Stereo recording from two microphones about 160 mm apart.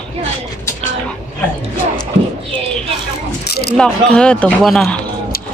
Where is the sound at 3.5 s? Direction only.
85° left.